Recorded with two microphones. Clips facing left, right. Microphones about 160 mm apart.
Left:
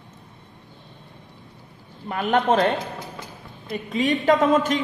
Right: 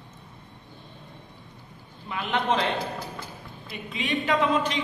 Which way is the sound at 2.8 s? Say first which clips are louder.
Even; 20° left (ahead or behind).